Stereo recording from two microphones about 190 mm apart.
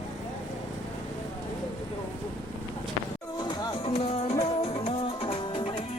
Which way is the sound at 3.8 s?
30° left (ahead or behind).